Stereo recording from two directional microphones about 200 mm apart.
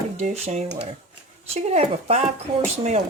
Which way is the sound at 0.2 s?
35° right (ahead or behind).